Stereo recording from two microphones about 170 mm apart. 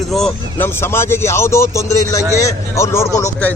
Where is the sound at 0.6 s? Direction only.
15° left (ahead or behind).